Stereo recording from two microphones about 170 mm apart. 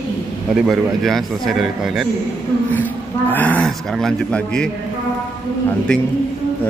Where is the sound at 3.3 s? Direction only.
10° left (ahead or behind).